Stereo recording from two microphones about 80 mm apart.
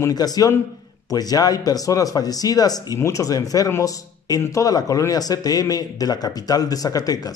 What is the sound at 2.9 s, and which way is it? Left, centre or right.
Speech, left.